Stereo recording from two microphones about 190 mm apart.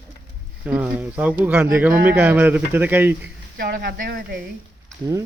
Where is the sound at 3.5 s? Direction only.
50° right (ahead or behind).